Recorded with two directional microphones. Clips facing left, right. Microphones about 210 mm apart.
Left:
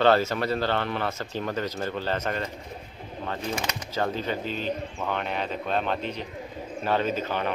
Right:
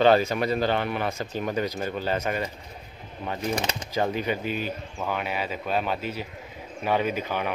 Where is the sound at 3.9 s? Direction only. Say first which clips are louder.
Right 2 dB; 15° right (ahead or behind).